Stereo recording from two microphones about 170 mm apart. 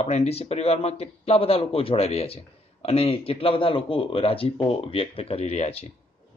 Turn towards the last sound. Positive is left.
turn(degrees=40)  # may be behind; listen again after turning